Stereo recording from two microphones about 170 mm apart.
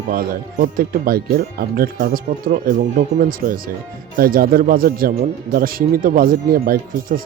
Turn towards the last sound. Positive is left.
turn(degrees=-55)  # may be behind; listen again after turning